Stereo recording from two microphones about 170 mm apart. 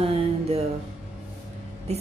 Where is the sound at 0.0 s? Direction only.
35° right (ahead or behind).